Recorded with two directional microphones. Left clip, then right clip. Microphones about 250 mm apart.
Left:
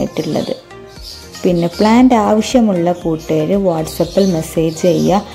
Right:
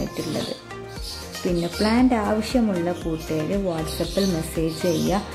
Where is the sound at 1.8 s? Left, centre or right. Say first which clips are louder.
Left 11 dB; left.